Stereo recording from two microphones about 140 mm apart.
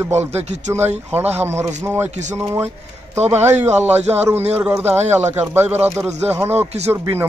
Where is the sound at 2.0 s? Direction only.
55° right (ahead or behind).